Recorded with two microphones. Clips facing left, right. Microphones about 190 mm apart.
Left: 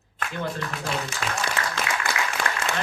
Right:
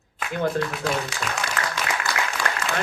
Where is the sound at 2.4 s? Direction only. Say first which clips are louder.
Right 1 dB; 55° left (ahead or behind).